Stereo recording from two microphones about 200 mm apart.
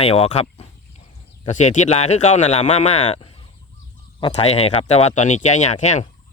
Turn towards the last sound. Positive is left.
turn(degrees=35)  # may be behind; listen again after turning